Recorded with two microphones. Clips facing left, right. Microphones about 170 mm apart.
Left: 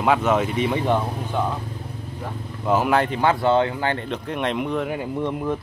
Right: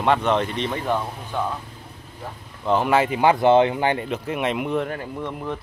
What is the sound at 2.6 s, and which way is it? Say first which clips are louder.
Speech: even; 5° left (ahead or behind).